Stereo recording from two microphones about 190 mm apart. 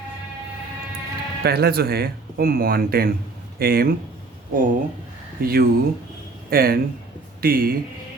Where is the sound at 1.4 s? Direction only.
55° right (ahead or behind).